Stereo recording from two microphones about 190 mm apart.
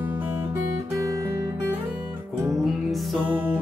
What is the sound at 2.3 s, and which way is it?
Music, centre (ahead or behind).